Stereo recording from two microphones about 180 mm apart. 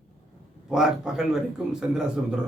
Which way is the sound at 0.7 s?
Centre (ahead or behind).